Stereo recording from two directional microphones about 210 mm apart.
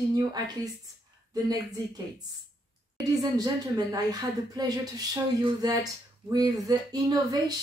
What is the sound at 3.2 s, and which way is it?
Speech, 20° right (ahead or behind).